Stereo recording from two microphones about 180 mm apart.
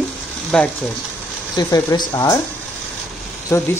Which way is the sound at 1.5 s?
20° left (ahead or behind).